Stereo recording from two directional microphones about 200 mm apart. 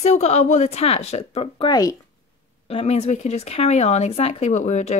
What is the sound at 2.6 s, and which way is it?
Speech, 30° left (ahead or behind).